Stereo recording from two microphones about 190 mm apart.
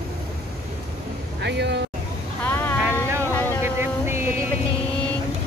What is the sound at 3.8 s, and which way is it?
Music, 10° right (ahead or behind).